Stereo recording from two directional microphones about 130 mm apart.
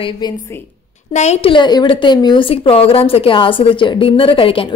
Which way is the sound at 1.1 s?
60° left (ahead or behind).